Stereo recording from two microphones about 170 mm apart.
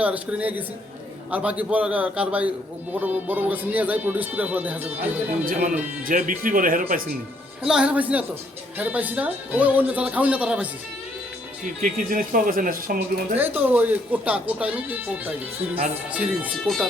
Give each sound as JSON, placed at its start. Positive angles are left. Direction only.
{"t": 0.0, "sound": "speech", "side_deg": -10}
{"t": 6.1, "sound": "speech", "side_deg": -55}
{"t": 7.6, "sound": "speech", "side_deg": -5}
{"t": 11.8, "sound": "speech", "side_deg": -55}
{"t": 13.3, "sound": "speech", "side_deg": -10}